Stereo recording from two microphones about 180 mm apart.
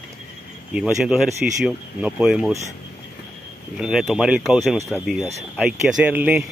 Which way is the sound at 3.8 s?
5° right (ahead or behind).